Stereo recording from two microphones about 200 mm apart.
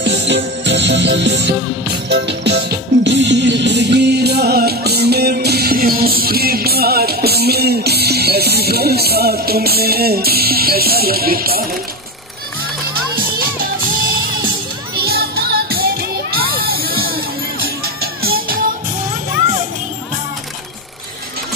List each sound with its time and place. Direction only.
0.0 s music: 60° right (ahead or behind)
15.0 s music: 50° right (ahead or behind)